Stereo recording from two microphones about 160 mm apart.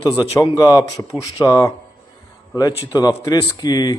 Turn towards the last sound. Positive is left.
turn(degrees=25)  # may be behind; listen again after turning